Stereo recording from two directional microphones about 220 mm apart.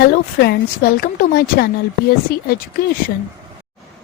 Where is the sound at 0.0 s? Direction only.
45° left (ahead or behind).